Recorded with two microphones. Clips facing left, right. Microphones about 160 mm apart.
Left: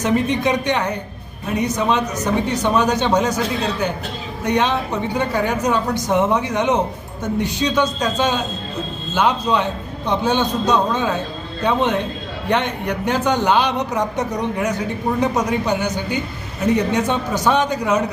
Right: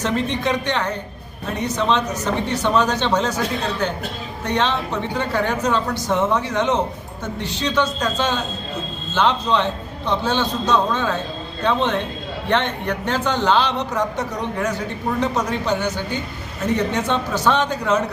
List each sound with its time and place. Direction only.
0.0 s a man's voice: 15° left (ahead or behind)